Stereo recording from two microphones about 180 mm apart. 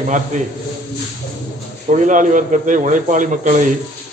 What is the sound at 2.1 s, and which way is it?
A man's voice, 45° right (ahead or behind).